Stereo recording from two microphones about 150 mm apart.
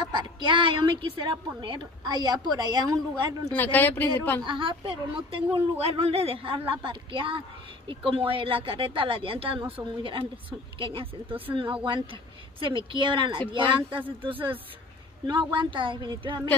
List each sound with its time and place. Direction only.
0.0 s a woman's voice: 30° right (ahead or behind)
3.5 s speech: 10° left (ahead or behind)
4.4 s a woman's voice: 35° right (ahead or behind)
10.8 s a woman's voice: 35° right (ahead or behind)